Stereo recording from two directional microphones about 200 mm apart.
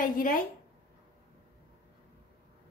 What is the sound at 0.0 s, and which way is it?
Speech, 45° left (ahead or behind).